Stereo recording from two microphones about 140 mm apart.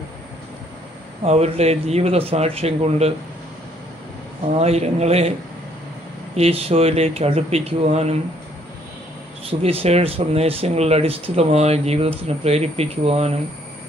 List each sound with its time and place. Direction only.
1.2 s speech: 50° right (ahead or behind)
4.6 s speech: 50° right (ahead or behind)
6.3 s speech: 45° right (ahead or behind)
9.5 s speech: 45° right (ahead or behind)